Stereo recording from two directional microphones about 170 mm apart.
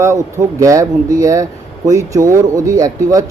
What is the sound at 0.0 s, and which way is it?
Speech, 15° right (ahead or behind).